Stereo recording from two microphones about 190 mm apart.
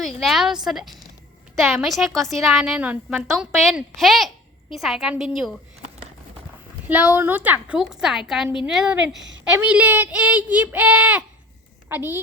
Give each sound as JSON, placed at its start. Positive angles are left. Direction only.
{"t": 0.2, "sound": "a woman's voice", "side_deg": 0}
{"t": 6.8, "sound": "a woman's voice", "side_deg": -10}